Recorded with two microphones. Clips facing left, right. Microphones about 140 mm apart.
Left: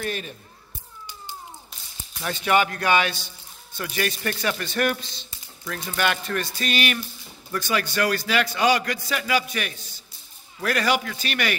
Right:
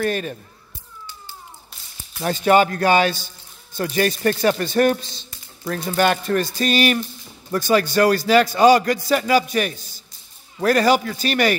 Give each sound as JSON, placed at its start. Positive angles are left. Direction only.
{"t": 0.0, "sound": "speech", "side_deg": -55}
{"t": 2.2, "sound": "a man's voice", "side_deg": -40}